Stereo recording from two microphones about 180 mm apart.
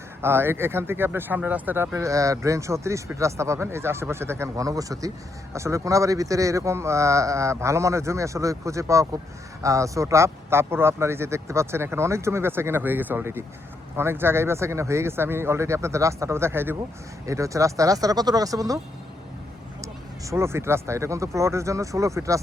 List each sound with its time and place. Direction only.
0.2 s speech: 15° right (ahead or behind)
20.3 s speech: 15° right (ahead or behind)